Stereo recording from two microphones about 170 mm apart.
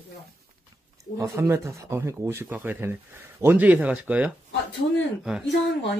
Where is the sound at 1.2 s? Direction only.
15° right (ahead or behind).